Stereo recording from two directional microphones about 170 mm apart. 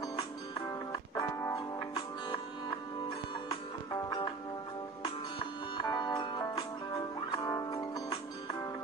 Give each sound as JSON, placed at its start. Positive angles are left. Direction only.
{"t": 1.4, "sound": "music", "side_deg": 20}
{"t": 3.4, "sound": "music", "side_deg": 25}
{"t": 5.8, "sound": "music", "side_deg": 25}